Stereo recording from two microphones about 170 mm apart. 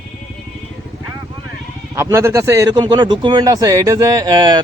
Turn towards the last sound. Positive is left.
turn(degrees=-25)  # may be behind; listen again after turning